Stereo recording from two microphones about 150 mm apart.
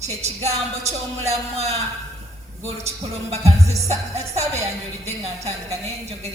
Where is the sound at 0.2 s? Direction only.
45° right (ahead or behind).